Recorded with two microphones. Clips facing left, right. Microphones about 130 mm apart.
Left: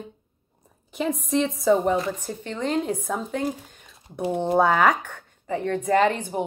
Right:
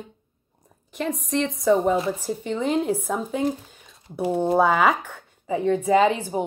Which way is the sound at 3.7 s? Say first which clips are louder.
Right 3 dB; 5° right (ahead or behind).